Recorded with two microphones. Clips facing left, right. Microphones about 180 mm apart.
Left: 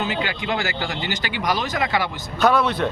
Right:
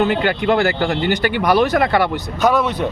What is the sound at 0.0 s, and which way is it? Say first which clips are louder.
Speech: right 9 dB; 55° right (ahead or behind).